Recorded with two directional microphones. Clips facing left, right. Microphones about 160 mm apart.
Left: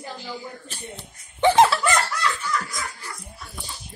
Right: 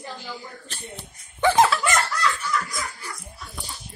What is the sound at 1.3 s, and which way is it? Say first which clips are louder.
Speech: left 2 dB; 25° left (ahead or behind).